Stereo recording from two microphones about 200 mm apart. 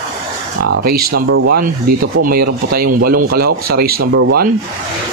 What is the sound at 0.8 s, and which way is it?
Speech, 50° right (ahead or behind).